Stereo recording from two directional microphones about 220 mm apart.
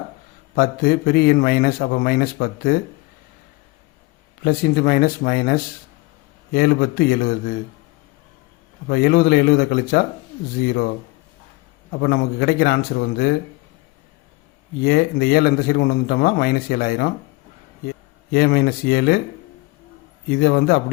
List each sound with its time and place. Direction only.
0.5 s a man's voice: 45° left (ahead or behind)
4.4 s a man's voice: 40° left (ahead or behind)
8.9 s a man's voice: 45° left (ahead or behind)
11.9 s a man's voice: 45° left (ahead or behind)
14.8 s a man's voice: 45° left (ahead or behind)
20.4 s a man's voice: 45° left (ahead or behind)